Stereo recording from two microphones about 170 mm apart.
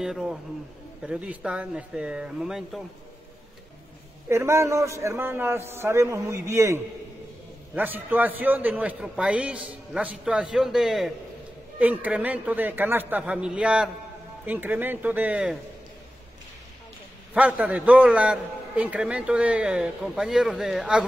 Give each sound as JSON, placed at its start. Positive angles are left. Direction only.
{"t": 0.0, "sound": "speech", "side_deg": -5}
{"t": 4.3, "sound": "a man's voice", "side_deg": -15}
{"t": 17.3, "sound": "a man's voice", "side_deg": -10}